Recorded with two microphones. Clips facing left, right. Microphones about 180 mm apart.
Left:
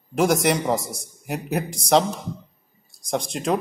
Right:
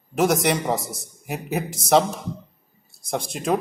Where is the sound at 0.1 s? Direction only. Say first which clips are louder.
Left 1 dB; centre (ahead or behind).